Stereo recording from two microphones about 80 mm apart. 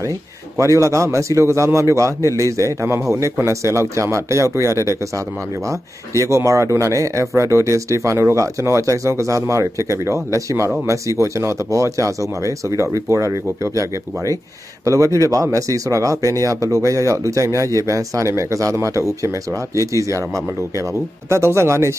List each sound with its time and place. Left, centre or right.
0.6 s speech: right